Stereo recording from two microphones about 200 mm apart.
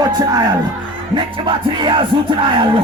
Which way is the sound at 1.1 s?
25° right (ahead or behind).